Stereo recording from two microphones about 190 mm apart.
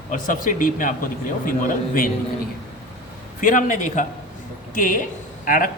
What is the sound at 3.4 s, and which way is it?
Speech, 45° left (ahead or behind).